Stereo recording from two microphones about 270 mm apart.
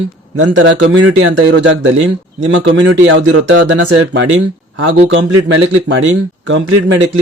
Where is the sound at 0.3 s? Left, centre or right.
Right.